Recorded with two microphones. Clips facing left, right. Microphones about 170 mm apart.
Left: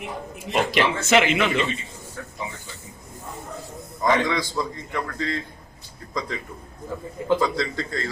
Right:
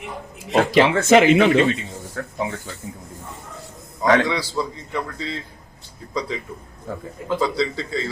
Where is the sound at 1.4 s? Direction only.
50° right (ahead or behind).